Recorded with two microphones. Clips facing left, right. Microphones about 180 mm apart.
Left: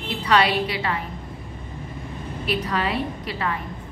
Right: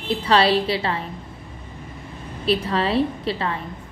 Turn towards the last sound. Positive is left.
turn(degrees=-30)  # may be behind; listen again after turning